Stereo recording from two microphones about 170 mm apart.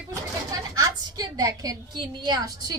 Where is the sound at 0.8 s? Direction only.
20° right (ahead or behind).